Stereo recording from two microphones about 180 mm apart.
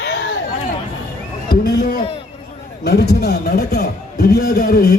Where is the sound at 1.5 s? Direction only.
55° left (ahead or behind).